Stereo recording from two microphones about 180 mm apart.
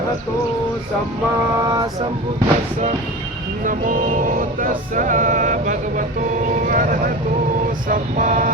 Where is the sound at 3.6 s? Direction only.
45° right (ahead or behind).